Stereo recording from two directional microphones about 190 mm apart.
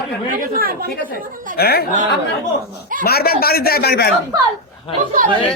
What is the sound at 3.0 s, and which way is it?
A man's voice, 55° left (ahead or behind).